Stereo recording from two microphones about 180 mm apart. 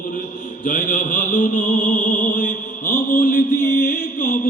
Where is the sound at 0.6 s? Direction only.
50° left (ahead or behind).